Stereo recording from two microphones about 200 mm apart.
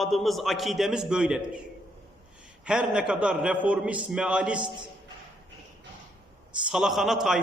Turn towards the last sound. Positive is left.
turn(degrees=0)  # may be behind; listen again after turning